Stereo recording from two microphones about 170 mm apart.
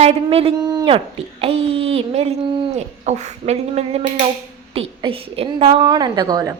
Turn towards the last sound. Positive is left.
turn(degrees=-25)  # may be behind; listen again after turning